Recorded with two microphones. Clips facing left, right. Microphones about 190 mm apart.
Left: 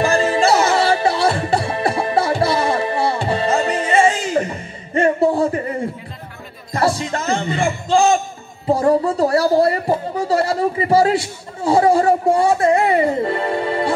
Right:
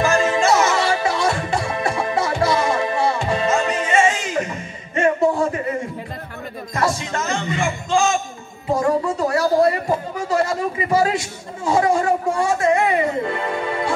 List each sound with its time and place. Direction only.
0.0 s music: 35° left (ahead or behind)
6.7 s music: 35° left (ahead or behind)
8.7 s speech: 35° left (ahead or behind)